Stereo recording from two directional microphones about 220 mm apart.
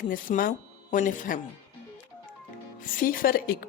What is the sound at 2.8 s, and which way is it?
Speech, 40° left (ahead or behind).